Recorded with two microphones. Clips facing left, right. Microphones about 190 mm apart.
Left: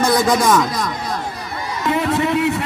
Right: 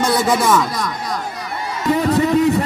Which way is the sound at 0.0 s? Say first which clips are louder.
Left 1 dB; 10° left (ahead or behind).